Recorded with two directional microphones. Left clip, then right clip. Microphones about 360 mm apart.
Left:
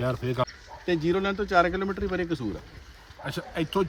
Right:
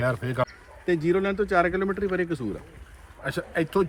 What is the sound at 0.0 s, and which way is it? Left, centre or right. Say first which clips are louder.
Speech: right 2 dB; centre.